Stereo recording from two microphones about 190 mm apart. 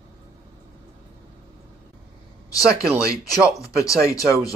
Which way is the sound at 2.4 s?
20° left (ahead or behind).